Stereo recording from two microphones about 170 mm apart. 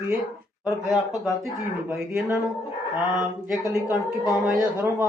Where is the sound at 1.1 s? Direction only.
Centre (ahead or behind).